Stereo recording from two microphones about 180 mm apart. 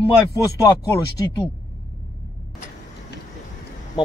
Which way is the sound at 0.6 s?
20° left (ahead or behind).